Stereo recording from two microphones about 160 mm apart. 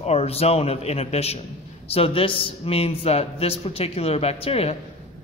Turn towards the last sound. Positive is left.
turn(degrees=40)  # may be behind; listen again after turning